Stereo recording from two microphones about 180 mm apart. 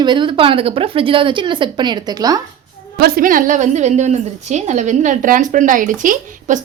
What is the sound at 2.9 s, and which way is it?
A woman's voice, 55° right (ahead or behind).